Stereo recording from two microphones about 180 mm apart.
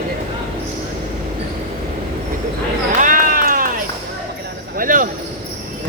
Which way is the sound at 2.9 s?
50° right (ahead or behind).